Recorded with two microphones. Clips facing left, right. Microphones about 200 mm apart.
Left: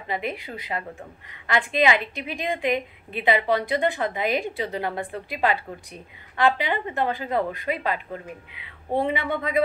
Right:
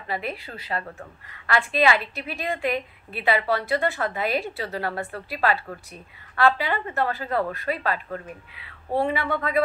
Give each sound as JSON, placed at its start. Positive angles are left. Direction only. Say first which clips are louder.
{"t": 0.0, "sound": "a woman's voice", "louder": "left 1 dB", "side_deg": 15}